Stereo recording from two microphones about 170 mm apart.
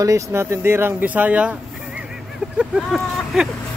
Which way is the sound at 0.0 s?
20° right (ahead or behind).